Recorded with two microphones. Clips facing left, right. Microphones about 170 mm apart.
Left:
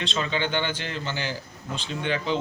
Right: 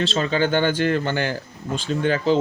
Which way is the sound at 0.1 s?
40° right (ahead or behind).